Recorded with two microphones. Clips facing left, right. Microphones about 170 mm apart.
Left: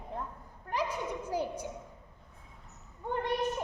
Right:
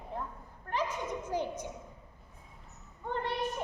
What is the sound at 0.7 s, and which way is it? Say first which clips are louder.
Speech: even; 10° left (ahead or behind).